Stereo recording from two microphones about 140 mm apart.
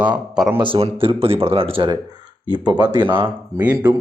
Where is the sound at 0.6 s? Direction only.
40° right (ahead or behind).